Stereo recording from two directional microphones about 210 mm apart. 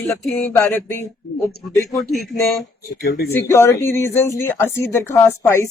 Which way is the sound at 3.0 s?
50° left (ahead or behind).